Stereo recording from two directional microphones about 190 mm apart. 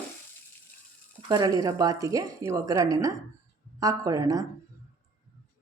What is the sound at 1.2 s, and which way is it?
Speech, 25° right (ahead or behind).